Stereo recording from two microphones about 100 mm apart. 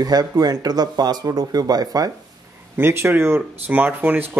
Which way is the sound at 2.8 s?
25° right (ahead or behind).